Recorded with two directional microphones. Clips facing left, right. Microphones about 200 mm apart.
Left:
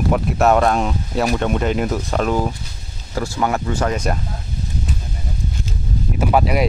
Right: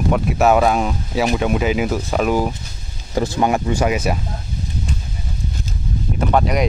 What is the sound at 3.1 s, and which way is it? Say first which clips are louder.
Speech: right 3 dB; 20° right (ahead or behind).